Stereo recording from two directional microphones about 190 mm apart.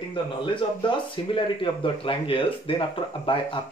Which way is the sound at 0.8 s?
25° left (ahead or behind).